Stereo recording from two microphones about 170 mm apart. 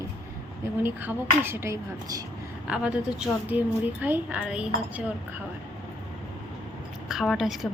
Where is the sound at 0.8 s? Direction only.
10° right (ahead or behind).